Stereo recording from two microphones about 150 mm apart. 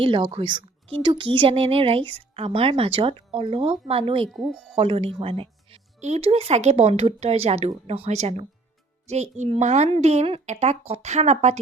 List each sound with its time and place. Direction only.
0.0 s a woman's voice: 35° right (ahead or behind)